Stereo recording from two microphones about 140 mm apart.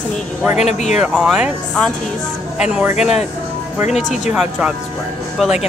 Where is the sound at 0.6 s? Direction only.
55° left (ahead or behind).